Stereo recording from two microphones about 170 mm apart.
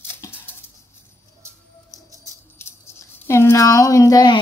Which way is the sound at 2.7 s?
15° left (ahead or behind).